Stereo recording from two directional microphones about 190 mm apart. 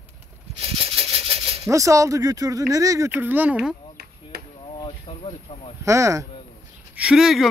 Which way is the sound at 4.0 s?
55° right (ahead or behind).